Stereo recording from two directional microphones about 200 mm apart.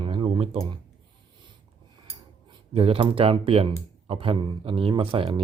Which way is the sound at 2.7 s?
30° right (ahead or behind).